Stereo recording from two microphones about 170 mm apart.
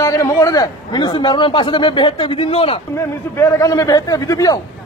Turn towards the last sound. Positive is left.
turn(degrees=20)  # may be behind; listen again after turning